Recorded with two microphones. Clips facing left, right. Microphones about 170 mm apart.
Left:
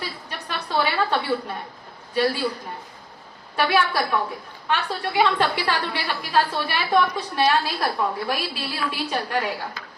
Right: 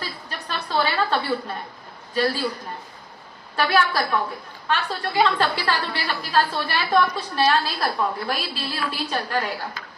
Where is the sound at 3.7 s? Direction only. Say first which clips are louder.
Right 1 dB; 15° left (ahead or behind).